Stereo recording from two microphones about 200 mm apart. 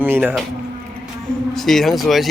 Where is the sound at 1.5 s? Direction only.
Centre (ahead or behind).